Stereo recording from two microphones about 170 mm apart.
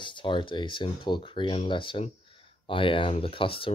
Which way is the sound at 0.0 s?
30° left (ahead or behind).